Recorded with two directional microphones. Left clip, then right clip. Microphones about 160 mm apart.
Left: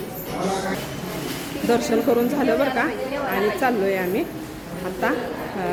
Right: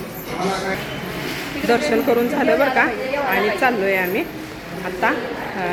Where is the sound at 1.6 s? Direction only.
10° left (ahead or behind).